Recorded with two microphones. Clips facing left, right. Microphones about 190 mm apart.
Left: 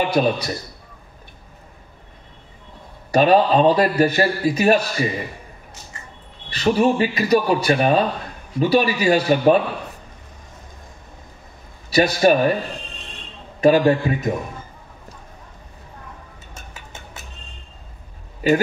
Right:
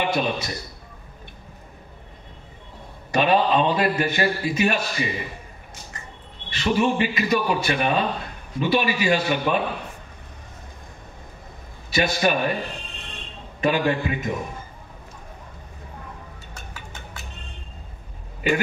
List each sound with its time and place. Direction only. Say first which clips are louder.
0.0 s a man's voice: left 5 dB; 40° left (ahead or behind)
3.1 s a man's voice: left 5 dB; 40° left (ahead or behind)
6.5 s a man's voice: left 4 dB; 40° left (ahead or behind)
11.9 s a man's voice: left 6 dB; 40° left (ahead or behind)
13.6 s a man's voice: left 7 dB; 40° left (ahead or behind)
18.4 s speech: left 6 dB; 35° left (ahead or behind)